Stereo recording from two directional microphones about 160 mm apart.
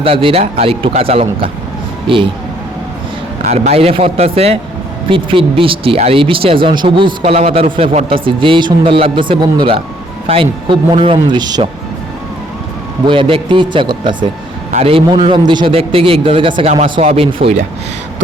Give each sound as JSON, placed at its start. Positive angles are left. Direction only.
{"t": 0.0, "sound": "speech", "side_deg": -35}
{"t": 3.4, "sound": "speech", "side_deg": -45}
{"t": 13.1, "sound": "speech", "side_deg": -35}
{"t": 14.7, "sound": "speech", "side_deg": -40}